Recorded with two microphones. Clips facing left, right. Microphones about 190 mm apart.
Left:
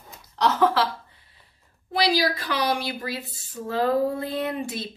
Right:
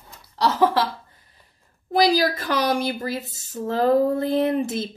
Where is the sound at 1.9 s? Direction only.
45° right (ahead or behind).